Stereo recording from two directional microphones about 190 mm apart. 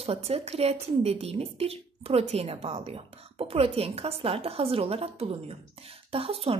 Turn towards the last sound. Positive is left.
turn(degrees=-30)  # may be behind; listen again after turning